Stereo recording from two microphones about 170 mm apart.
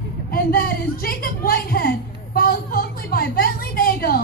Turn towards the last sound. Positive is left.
turn(degrees=60)  # may be behind; listen again after turning